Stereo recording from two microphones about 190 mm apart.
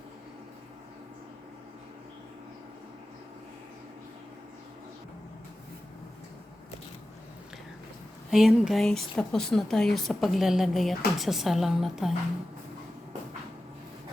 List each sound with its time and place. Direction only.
8.3 s speech: centre (ahead or behind)